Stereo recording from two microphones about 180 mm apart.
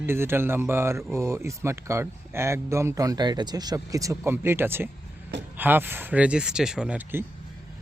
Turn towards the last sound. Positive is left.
turn(degrees=-10)  # may be behind; listen again after turning